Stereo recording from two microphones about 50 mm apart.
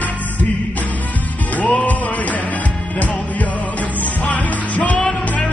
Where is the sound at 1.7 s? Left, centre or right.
Left.